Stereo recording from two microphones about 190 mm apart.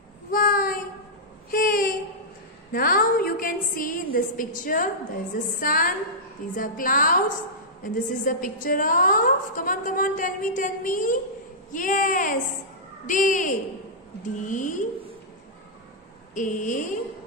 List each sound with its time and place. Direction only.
0.3 s child singing: 45° left (ahead or behind)
1.5 s a sound: 50° left (ahead or behind)
2.7 s a woman's voice: 50° left (ahead or behind)
16.3 s a woman's voice: 40° left (ahead or behind)